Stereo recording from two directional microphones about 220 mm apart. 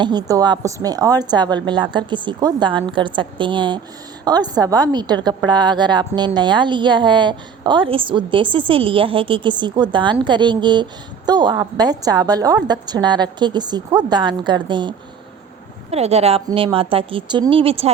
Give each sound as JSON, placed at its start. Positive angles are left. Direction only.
{"t": 0.0, "sound": "a woman's voice", "side_deg": -20}